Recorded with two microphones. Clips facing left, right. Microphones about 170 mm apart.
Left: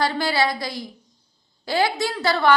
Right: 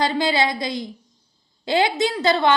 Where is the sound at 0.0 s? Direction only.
20° right (ahead or behind).